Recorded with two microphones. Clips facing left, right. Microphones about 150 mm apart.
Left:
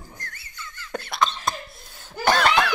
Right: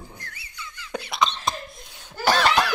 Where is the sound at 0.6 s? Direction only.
20° right (ahead or behind).